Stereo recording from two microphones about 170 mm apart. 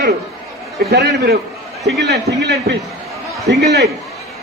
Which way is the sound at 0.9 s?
70° right (ahead or behind).